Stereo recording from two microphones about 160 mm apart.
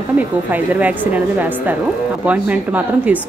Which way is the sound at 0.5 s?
10° right (ahead or behind).